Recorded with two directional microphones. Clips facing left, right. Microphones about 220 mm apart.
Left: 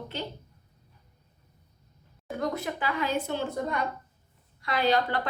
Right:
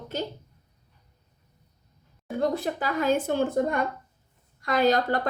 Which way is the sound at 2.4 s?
35° right (ahead or behind).